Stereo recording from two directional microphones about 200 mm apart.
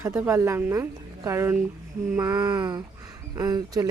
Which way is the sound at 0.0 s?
10° right (ahead or behind).